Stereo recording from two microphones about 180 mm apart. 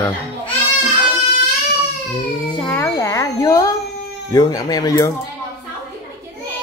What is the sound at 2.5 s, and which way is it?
Baby cry, 10° left (ahead or behind).